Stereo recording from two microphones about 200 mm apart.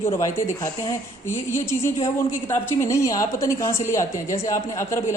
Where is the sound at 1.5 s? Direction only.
15° left (ahead or behind).